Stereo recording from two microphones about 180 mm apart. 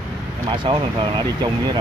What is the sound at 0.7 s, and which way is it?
Speech, 25° right (ahead or behind).